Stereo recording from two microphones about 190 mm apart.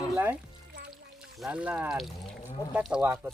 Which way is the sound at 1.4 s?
5° right (ahead or behind).